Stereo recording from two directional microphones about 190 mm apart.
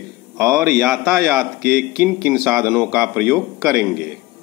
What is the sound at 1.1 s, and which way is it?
A man's voice, 5° right (ahead or behind).